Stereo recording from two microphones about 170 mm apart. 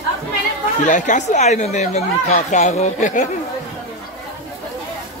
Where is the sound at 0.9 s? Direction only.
45° left (ahead or behind).